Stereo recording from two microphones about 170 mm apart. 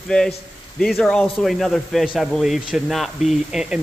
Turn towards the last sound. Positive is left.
turn(degrees=0)  # may be behind; listen again after turning